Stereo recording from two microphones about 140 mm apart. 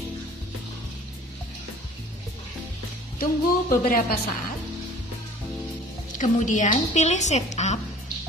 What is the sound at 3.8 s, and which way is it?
Speech, 90° left.